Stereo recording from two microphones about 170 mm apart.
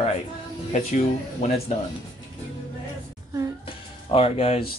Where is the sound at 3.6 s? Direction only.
35° left (ahead or behind).